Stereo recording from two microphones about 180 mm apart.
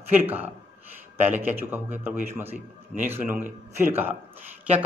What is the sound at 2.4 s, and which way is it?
Speech, 45° right (ahead or behind).